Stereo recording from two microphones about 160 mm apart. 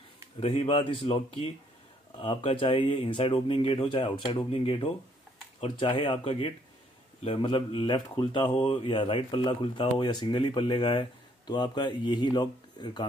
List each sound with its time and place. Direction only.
0.4 s speech: 35° left (ahead or behind)